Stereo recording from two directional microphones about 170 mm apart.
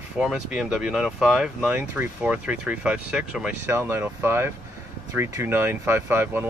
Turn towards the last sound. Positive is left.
turn(degrees=-15)  # may be behind; listen again after turning